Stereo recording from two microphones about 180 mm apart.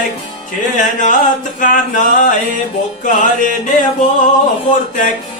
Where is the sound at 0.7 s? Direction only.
45° left (ahead or behind).